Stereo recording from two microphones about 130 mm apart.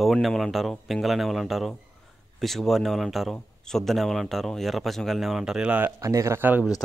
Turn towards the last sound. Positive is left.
turn(degrees=-15)  # may be behind; listen again after turning